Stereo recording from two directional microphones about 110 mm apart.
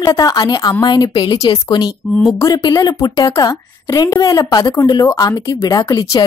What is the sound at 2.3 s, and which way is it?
A woman's voice, 30° left (ahead or behind).